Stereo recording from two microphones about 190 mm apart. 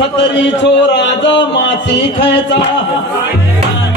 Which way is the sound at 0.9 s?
65° left (ahead or behind).